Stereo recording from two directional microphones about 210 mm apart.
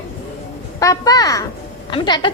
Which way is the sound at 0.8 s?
15° left (ahead or behind).